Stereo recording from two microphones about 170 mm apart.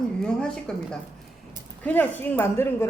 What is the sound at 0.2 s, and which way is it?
A woman's voice, 5° left (ahead or behind).